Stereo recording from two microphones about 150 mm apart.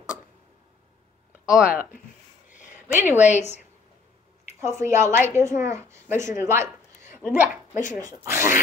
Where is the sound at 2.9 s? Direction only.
10° right (ahead or behind).